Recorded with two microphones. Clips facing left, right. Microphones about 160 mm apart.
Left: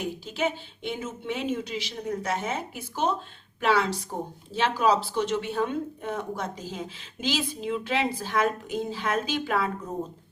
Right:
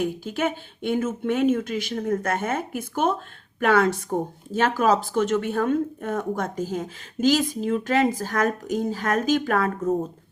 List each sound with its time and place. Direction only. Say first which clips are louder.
0.0 s speech: right 4 dB; 50° right (ahead or behind)